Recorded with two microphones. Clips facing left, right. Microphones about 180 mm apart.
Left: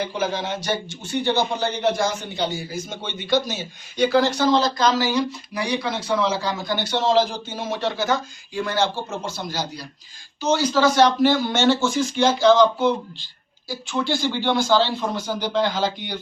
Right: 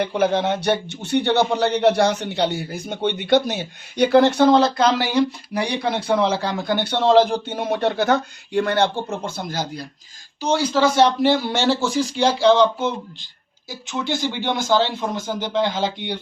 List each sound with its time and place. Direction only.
0.0 s a man's voice: 60° right (ahead or behind)
10.4 s a man's voice: 30° right (ahead or behind)